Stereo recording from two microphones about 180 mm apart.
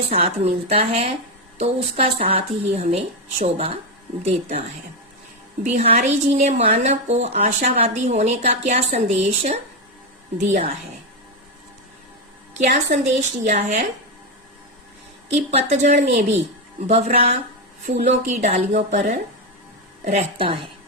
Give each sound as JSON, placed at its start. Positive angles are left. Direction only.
{"t": 0.1, "sound": "a woman's voice", "side_deg": -35}
{"t": 5.6, "sound": "a woman's voice", "side_deg": -40}
{"t": 12.5, "sound": "a woman's voice", "side_deg": -40}
{"t": 15.3, "sound": "a woman's voice", "side_deg": -35}